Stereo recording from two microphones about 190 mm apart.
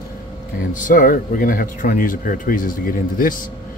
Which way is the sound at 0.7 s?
45° left (ahead or behind).